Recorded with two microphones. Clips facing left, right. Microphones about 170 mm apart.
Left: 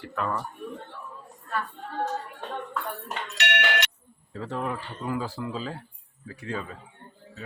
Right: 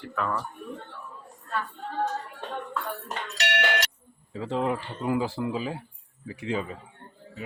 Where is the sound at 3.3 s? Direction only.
40° right (ahead or behind).